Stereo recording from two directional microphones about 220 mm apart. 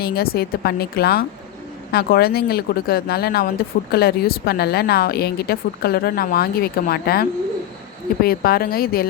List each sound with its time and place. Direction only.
0.0 s speech: 45° left (ahead or behind)